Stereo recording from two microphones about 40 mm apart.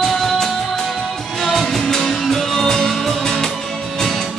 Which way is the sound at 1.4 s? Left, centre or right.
Centre.